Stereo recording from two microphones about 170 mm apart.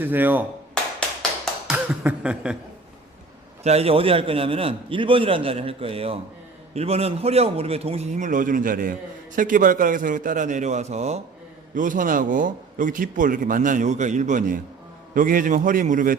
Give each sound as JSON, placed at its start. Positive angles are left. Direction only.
{"t": 0.0, "sound": "speech", "side_deg": -10}
{"t": 1.6, "sound": "a sound", "side_deg": -5}
{"t": 3.6, "sound": "a man's voice", "side_deg": -40}
{"t": 11.7, "sound": "a man's voice", "side_deg": -50}